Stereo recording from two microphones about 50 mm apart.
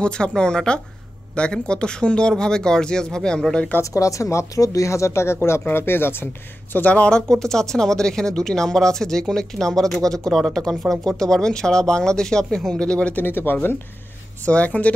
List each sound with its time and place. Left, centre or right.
0.0 s speech: centre
4.0 s speech: left
5.6 s speech: left
6.7 s speech: left
7.2 s speech: centre
13.1 s speech: left
14.4 s speech: left